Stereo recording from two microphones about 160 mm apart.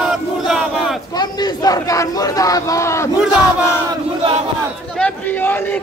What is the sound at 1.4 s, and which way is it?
Speech, 25° left (ahead or behind).